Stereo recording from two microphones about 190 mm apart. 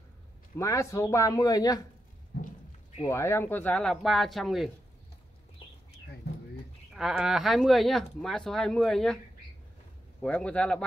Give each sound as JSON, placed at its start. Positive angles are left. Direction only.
{"t": 0.6, "sound": "speech", "side_deg": 15}
{"t": 2.3, "sound": "a sound", "side_deg": 60}
{"t": 3.0, "sound": "speech", "side_deg": 15}
{"t": 6.2, "sound": "bird", "side_deg": 60}
{"t": 6.9, "sound": "speech", "side_deg": 0}
{"t": 10.2, "sound": "speech", "side_deg": 5}